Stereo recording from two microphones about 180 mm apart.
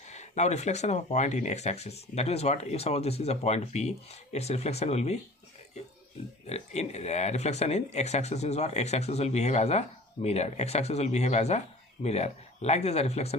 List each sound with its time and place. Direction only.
0.1 s speech: 40° left (ahead or behind)
6.5 s speech: 40° left (ahead or behind)